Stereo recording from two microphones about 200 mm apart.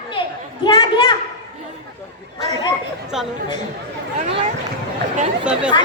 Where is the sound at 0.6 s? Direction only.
20° left (ahead or behind).